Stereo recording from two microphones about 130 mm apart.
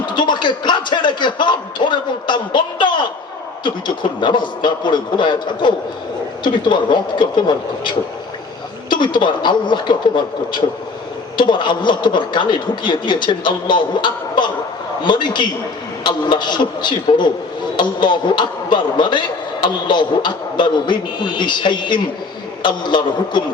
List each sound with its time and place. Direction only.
0.0 s music: 35° left (ahead or behind)
3.6 s a man's voice: 35° left (ahead or behind)